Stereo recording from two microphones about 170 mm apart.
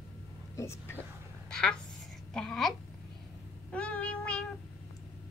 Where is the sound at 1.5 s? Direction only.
5° left (ahead or behind).